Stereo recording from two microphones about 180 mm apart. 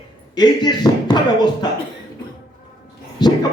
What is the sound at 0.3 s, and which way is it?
Speech, 25° left (ahead or behind).